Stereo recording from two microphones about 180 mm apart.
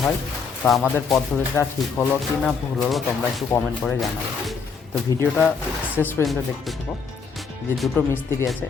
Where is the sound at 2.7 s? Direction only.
Centre (ahead or behind).